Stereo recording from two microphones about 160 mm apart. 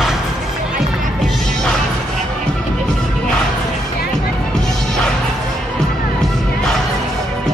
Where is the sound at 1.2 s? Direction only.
5° left (ahead or behind).